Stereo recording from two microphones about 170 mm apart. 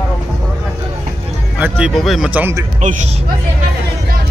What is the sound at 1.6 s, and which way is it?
Speech, 5° right (ahead or behind).